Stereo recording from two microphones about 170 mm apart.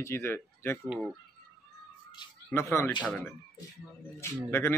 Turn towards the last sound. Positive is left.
turn(degrees=15)  # may be behind; listen again after turning